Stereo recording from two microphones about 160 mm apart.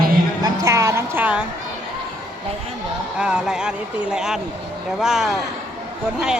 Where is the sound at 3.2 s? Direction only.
5° right (ahead or behind).